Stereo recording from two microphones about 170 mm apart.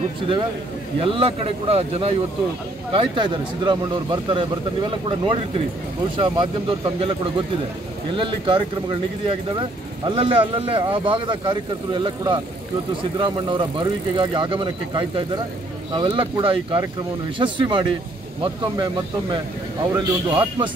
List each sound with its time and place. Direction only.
1.0 s speech: 30° right (ahead or behind)
6.1 s speech: 30° right (ahead or behind)
19.9 s speech: 15° right (ahead or behind)